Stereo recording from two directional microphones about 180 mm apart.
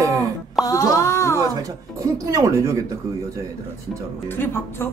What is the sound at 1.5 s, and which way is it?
Speech, 15° right (ahead or behind).